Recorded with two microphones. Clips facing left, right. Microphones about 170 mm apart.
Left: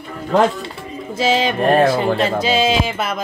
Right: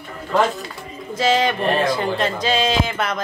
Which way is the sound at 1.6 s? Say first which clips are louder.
Left 5 dB; 50° left (ahead or behind).